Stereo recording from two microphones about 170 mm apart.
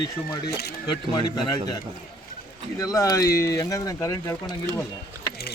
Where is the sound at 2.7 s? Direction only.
20° left (ahead or behind).